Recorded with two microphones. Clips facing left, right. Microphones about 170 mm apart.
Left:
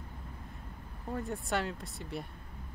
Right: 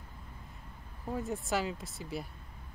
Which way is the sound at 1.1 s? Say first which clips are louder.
Right 1 dB; centre (ahead or behind).